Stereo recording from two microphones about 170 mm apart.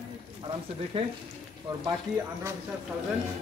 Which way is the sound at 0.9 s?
30° right (ahead or behind).